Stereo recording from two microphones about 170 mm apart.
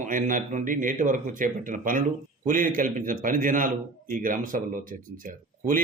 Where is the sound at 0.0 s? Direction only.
50° right (ahead or behind).